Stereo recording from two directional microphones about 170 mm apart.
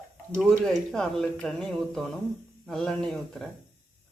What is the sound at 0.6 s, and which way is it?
Speech, centre (ahead or behind).